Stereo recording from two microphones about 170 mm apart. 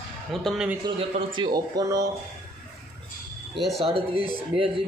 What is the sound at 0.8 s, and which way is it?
Speech, 30° right (ahead or behind).